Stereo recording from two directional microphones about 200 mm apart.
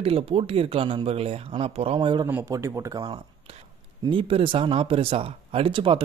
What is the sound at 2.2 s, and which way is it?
Speech, 15° right (ahead or behind).